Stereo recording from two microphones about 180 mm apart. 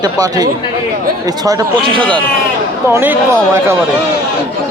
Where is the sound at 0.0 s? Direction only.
20° right (ahead or behind).